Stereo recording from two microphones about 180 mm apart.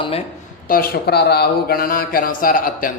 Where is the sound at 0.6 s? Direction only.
55° left (ahead or behind).